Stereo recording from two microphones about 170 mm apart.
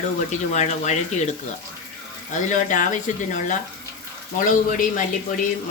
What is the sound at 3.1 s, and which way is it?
Speech, 45° left (ahead or behind).